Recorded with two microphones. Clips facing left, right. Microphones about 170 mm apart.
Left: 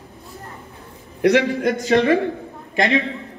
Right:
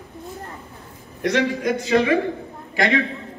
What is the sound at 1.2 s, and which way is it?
Speech, 65° left (ahead or behind).